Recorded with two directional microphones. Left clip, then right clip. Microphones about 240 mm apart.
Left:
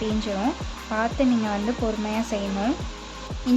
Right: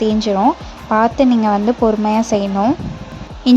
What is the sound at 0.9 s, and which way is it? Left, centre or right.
A woman's voice, right.